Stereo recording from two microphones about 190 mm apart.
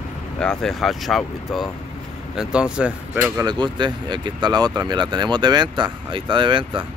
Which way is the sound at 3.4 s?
25° right (ahead or behind).